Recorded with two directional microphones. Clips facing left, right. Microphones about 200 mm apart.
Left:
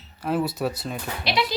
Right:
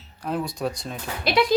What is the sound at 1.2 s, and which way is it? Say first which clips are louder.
Speech: right 4 dB; 50° right (ahead or behind).